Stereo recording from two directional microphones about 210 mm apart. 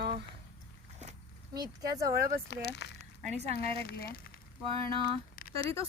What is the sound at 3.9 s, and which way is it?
Speech, 45° left (ahead or behind).